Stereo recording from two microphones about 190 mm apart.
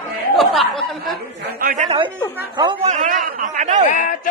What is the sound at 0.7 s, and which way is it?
Snicker, centre (ahead or behind).